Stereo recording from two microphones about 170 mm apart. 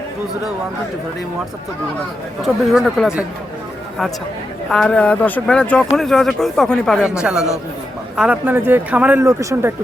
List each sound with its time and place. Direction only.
2.4 s speech: centre (ahead or behind)
4.7 s speech: 5° left (ahead or behind); by 9.7 s 15° right (ahead or behind)